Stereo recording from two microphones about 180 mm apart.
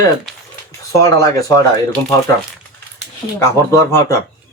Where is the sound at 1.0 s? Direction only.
20° left (ahead or behind).